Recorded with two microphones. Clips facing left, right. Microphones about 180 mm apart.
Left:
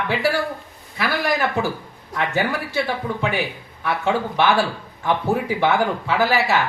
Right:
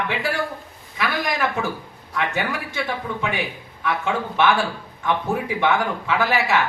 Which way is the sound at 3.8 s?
35° left (ahead or behind).